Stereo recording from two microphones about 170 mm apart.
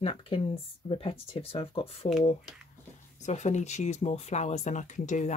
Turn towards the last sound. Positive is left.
turn(degrees=45)  # may be behind; listen again after turning